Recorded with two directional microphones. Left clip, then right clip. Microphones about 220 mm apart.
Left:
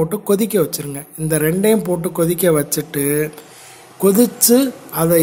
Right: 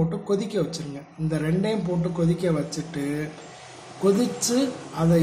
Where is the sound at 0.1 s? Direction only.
40° left (ahead or behind).